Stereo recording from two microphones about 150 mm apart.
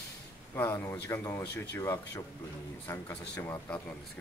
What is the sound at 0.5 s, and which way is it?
Speech, 15° left (ahead or behind).